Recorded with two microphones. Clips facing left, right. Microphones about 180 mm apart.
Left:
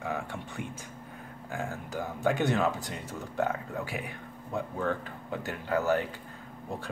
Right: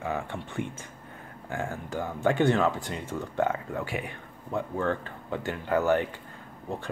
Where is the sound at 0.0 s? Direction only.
Centre (ahead or behind).